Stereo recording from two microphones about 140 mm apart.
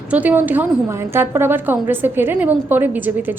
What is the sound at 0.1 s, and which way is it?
A woman's voice, 10° right (ahead or behind).